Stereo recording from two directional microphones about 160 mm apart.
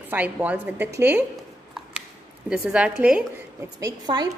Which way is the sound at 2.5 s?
5° right (ahead or behind).